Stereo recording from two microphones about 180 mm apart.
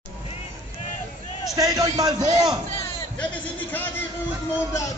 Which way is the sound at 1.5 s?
20° right (ahead or behind).